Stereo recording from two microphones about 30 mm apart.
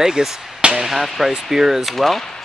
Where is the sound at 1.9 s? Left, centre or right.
Centre.